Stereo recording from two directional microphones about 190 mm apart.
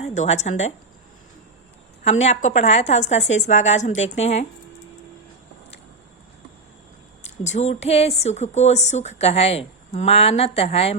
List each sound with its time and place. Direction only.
0.0 s speech: 35° left (ahead or behind)
2.0 s a woman's voice: 35° left (ahead or behind)
7.3 s a woman's voice: 35° left (ahead or behind)